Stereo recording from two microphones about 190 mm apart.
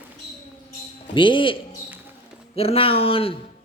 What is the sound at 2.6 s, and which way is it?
Speech, 30° left (ahead or behind).